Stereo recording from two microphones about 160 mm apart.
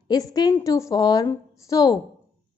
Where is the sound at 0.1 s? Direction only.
25° left (ahead or behind).